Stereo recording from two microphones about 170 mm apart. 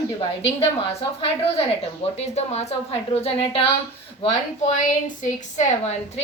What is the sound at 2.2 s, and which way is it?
A woman's voice, 40° left (ahead or behind).